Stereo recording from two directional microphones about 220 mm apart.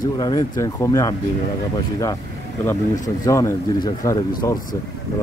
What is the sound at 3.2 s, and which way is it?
A man's voice, 15° left (ahead or behind).